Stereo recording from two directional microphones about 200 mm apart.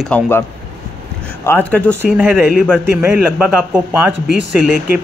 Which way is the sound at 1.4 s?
10° left (ahead or behind).